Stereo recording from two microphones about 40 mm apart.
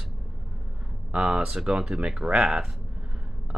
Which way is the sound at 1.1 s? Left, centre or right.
Right.